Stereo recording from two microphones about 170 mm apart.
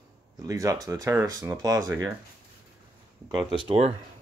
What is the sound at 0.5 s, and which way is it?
Speech, 20° right (ahead or behind).